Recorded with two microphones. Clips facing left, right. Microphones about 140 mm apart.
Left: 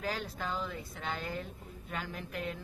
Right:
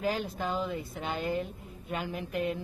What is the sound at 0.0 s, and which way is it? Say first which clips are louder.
A woman's voice: right 6 dB; 20° right (ahead or behind).